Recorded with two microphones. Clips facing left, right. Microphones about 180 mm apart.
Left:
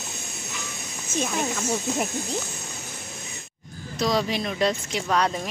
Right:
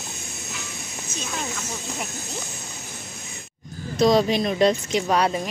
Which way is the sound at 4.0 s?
25° right (ahead or behind).